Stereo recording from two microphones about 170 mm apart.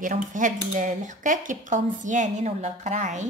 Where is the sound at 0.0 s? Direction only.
50° right (ahead or behind).